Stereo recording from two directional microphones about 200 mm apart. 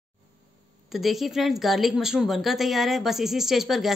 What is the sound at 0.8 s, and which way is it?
A woman's voice, centre (ahead or behind).